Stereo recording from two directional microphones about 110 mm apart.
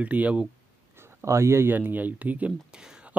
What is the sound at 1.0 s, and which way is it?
Speech, 25° right (ahead or behind).